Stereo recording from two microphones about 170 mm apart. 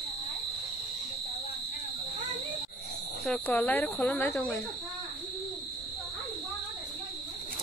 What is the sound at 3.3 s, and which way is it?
Speech, 5° left (ahead or behind).